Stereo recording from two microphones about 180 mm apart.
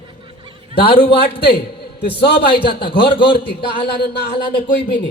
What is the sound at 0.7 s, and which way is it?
Speech, 60° left (ahead or behind).